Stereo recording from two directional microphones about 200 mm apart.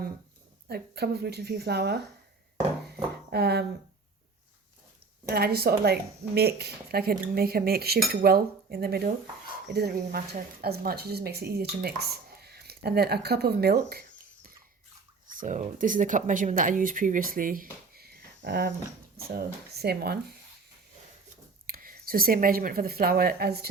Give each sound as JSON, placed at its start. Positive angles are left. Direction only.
{"t": 0.7, "sound": "speech", "side_deg": -50}
{"t": 2.9, "sound": "a sound", "side_deg": -50}
{"t": 5.3, "sound": "speech", "side_deg": -50}
{"t": 15.4, "sound": "speech", "side_deg": -40}
{"t": 21.7, "sound": "speech", "side_deg": -45}